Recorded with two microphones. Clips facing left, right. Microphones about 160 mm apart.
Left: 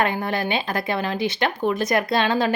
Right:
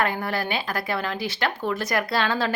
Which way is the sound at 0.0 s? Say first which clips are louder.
Left 3 dB; 20° left (ahead or behind).